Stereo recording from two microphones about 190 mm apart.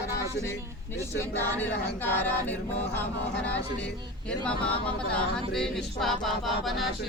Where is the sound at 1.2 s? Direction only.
10° left (ahead or behind).